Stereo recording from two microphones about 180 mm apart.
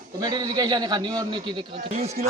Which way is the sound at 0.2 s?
20° right (ahead or behind).